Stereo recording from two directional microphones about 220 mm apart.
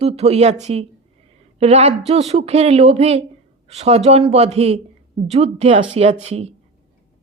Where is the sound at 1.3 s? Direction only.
30° right (ahead or behind).